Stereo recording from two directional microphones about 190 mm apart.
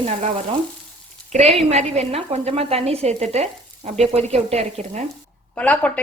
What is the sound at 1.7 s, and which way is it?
Speech, 35° right (ahead or behind).